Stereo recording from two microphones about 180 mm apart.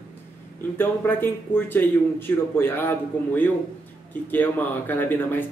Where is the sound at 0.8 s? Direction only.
10° left (ahead or behind).